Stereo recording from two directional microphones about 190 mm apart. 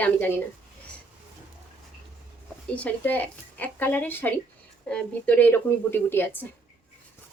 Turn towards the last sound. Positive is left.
turn(degrees=10)  # may be behind; listen again after turning